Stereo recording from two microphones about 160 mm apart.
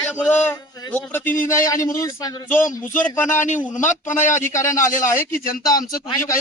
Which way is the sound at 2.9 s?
10° left (ahead or behind).